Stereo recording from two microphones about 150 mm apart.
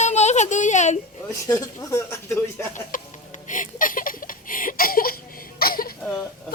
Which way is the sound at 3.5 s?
60° left (ahead or behind).